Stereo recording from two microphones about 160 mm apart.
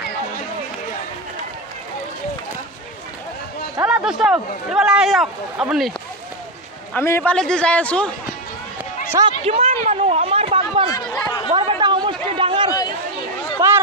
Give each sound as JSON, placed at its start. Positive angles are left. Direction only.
{"t": 3.8, "sound": "speech", "side_deg": -10}
{"t": 6.9, "sound": "a man's voice", "side_deg": 15}
{"t": 9.4, "sound": "a sound", "side_deg": -40}
{"t": 10.9, "sound": "chatter", "side_deg": 20}
{"t": 11.5, "sound": "a sound", "side_deg": -35}
{"t": 13.6, "sound": "run", "side_deg": -15}